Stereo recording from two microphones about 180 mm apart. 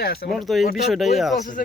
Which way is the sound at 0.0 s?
60° left (ahead or behind).